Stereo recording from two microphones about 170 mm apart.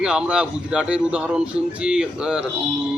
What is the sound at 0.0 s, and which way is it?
A man's voice, 5° right (ahead or behind).